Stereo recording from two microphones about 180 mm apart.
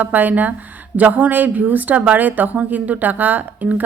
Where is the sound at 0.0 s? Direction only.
10° right (ahead or behind).